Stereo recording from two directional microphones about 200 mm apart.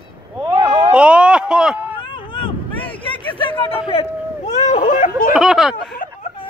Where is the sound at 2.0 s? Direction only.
25° left (ahead or behind); by 5.3 s 45° left (ahead or behind).